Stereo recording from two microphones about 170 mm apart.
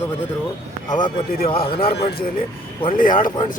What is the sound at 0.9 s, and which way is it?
A man's voice, 25° left (ahead or behind).